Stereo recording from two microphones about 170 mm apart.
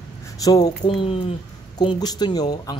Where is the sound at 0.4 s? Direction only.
20° left (ahead or behind).